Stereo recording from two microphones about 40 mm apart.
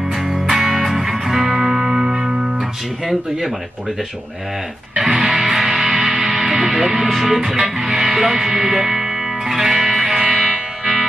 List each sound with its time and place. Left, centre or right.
0.3 s music: centre
1.4 s music: centre
4.9 s music: centre
6.5 s speech: centre
9.5 s music: centre